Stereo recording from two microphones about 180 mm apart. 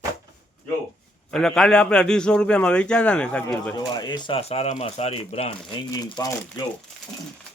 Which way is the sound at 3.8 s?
20° left (ahead or behind).